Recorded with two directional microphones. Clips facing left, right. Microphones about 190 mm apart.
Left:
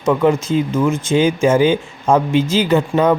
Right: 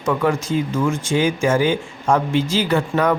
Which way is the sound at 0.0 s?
20° left (ahead or behind).